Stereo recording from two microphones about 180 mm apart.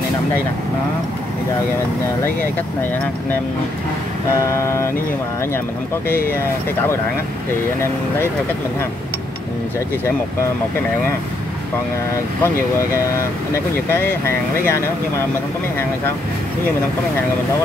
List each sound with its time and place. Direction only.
4.4 s speech: 15° left (ahead or behind)
13.5 s speech: 15° left (ahead or behind)